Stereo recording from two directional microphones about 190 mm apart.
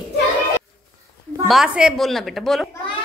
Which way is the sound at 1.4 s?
5° right (ahead or behind).